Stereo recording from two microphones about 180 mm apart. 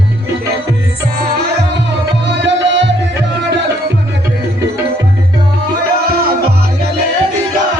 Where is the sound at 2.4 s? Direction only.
80° right.